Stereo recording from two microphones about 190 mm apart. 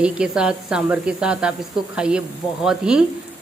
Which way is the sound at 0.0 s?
5° right (ahead or behind).